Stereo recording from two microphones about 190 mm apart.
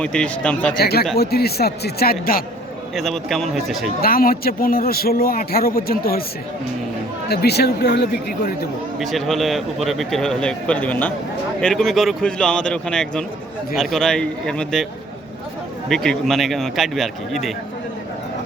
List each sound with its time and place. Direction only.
0.0 s a man's voice: 5° left (ahead or behind)
0.8 s a man's voice: 55° left (ahead or behind)
2.9 s a man's voice: centre (ahead or behind)
4.0 s a man's voice: 50° left (ahead or behind)
7.3 s a man's voice: 60° left (ahead or behind)
9.0 s a man's voice: centre (ahead or behind)
15.9 s a man's voice: centre (ahead or behind)